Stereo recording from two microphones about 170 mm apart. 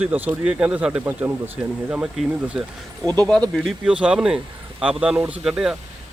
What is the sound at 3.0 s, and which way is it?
Speech, 5° left (ahead or behind).